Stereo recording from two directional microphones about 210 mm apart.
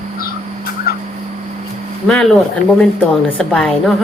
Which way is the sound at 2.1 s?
Centre (ahead or behind).